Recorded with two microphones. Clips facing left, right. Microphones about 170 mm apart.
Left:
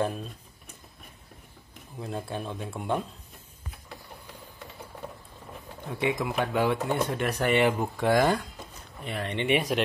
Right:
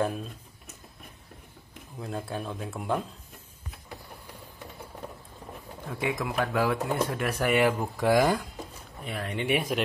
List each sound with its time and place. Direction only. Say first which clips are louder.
0.0 s speech: even; 5° right (ahead or behind)
2.0 s speech: even; 5° left (ahead or behind)
5.9 s speech: left 2 dB; centre (ahead or behind)